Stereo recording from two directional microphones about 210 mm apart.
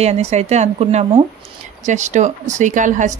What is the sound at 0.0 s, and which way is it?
A woman's voice, 30° right (ahead or behind).